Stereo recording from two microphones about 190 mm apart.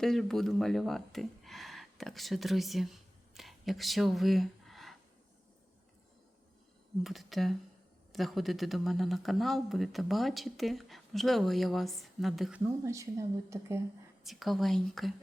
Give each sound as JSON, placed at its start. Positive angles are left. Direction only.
{"t": 0.0, "sound": "speech", "side_deg": 0}
{"t": 7.0, "sound": "speech", "side_deg": 0}
{"t": 14.3, "sound": "speech", "side_deg": 0}